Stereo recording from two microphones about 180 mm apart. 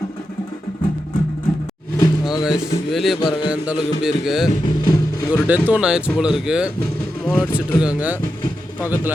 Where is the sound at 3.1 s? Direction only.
25° left (ahead or behind).